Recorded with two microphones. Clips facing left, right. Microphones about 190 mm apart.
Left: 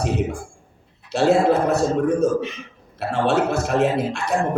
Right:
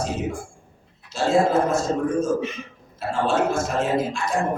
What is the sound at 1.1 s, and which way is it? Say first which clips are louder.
Speech: left 3 dB; 65° left (ahead or behind).